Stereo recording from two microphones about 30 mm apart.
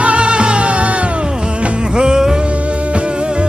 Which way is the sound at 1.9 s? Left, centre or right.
Right.